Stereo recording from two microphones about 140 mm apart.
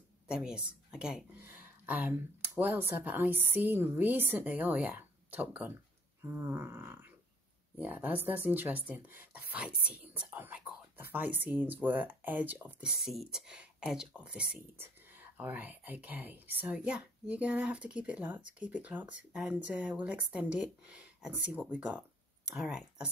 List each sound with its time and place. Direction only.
0.3 s a woman's voice: 5° right (ahead or behind)